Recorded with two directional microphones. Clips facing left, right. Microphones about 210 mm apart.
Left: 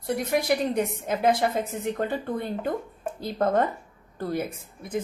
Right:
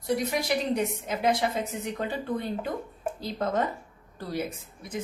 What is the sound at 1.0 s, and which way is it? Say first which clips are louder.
A woman's voice: left 5 dB; 55° left (ahead or behind).